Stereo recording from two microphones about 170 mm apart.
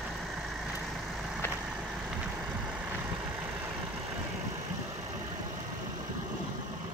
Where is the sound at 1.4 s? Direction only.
10° left (ahead or behind).